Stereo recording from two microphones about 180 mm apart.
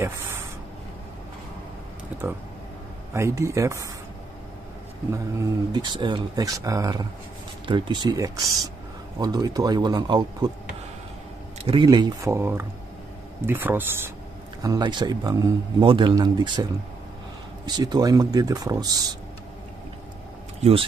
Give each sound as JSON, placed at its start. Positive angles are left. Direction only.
{"t": 0.0, "sound": "a sound", "side_deg": -15}
{"t": 3.1, "sound": "speech", "side_deg": -15}
{"t": 5.1, "sound": "a man's voice", "side_deg": -20}
{"t": 11.6, "sound": "a man's voice", "side_deg": -30}
{"t": 14.6, "sound": "a man's voice", "side_deg": -25}
{"t": 17.6, "sound": "a man's voice", "side_deg": -25}